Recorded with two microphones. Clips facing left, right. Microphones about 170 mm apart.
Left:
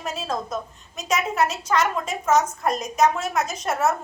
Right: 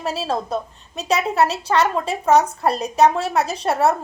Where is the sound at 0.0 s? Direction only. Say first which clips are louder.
Right 5 dB; 35° right (ahead or behind).